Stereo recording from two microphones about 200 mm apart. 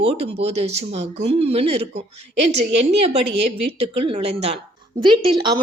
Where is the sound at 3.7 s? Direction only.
30° right (ahead or behind).